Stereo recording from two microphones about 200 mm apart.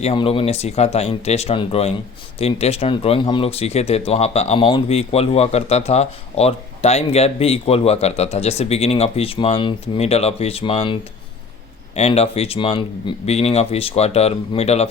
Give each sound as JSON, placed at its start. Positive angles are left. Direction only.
{"t": 0.0, "sound": "speech", "side_deg": 30}
{"t": 11.9, "sound": "speech", "side_deg": 30}